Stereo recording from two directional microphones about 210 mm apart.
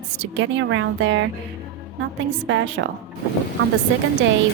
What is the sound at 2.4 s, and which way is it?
Speech, 65° right (ahead or behind).